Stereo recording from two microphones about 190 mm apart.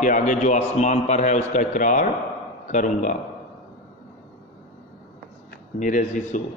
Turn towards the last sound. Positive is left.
turn(degrees=40)  # may be behind; listen again after turning